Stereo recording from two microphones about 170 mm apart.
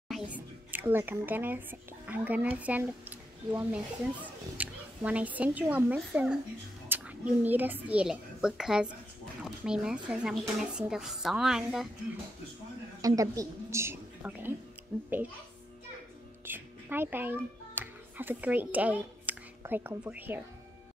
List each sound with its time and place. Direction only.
0.1 s a woman's voice: 10° right (ahead or behind)
13.0 s a woman's voice: 20° right (ahead or behind)
14.9 s speech: 5° left (ahead or behind)
16.4 s a child's voice: 10° right (ahead or behind)